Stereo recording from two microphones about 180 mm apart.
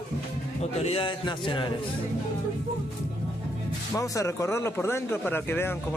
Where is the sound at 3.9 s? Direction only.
15° left (ahead or behind).